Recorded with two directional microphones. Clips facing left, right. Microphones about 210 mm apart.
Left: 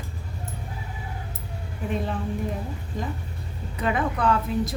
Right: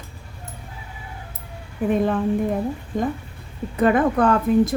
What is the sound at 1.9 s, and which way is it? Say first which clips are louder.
Speech: right 8 dB; 55° right (ahead or behind).